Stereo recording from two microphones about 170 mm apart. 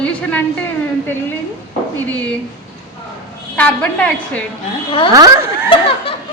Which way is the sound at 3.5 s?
10° left (ahead or behind).